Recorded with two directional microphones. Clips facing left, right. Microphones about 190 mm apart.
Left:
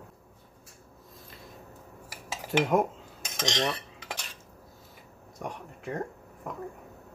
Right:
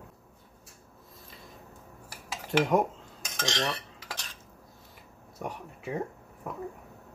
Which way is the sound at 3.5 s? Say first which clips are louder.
Left 2 dB; 15° left (ahead or behind).